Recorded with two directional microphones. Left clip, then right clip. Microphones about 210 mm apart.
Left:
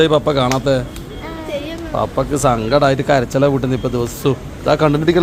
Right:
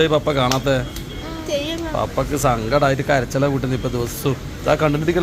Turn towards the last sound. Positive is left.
turn(degrees=35)  # may be behind; listen again after turning